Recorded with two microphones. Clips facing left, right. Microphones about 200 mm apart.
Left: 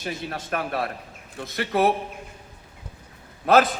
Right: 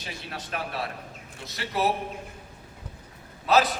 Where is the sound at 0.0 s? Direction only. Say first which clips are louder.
Left 7 dB; 50° left (ahead or behind).